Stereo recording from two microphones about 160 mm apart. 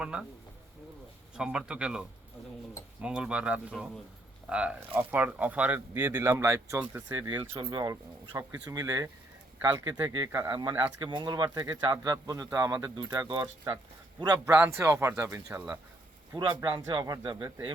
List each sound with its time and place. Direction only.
0.0 s speech: 5° right (ahead or behind)
1.4 s speech: 5° right (ahead or behind); by 7.9 s 25° right (ahead or behind)
8.3 s speech: 15° right (ahead or behind)
8.6 s speech: 25° right (ahead or behind)
16.3 s speech: 30° right (ahead or behind)